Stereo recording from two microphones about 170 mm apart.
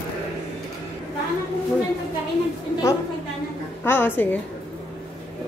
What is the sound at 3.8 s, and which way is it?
Speech, 15° left (ahead or behind).